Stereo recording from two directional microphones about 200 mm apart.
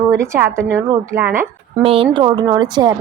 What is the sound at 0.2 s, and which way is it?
A woman's voice, 10° right (ahead or behind).